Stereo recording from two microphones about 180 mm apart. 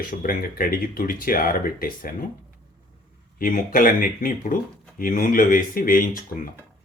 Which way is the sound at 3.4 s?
50° left (ahead or behind).